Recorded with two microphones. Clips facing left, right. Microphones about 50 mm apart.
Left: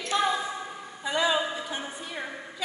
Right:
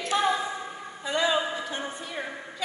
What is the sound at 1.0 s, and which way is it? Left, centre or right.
Speech, centre.